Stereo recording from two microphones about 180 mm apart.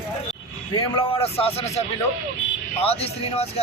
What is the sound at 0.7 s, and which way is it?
A man's voice, 25° left (ahead or behind).